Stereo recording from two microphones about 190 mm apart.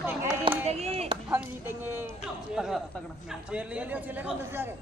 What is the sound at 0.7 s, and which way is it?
Chop, 35° right (ahead or behind).